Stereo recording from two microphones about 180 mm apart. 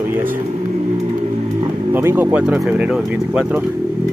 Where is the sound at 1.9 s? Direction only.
15° right (ahead or behind).